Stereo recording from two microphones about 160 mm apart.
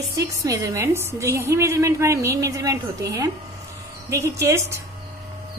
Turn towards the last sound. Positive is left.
turn(degrees=-15)  # may be behind; listen again after turning